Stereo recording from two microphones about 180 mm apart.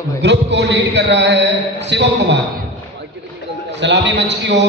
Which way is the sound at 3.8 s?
75° right (ahead or behind).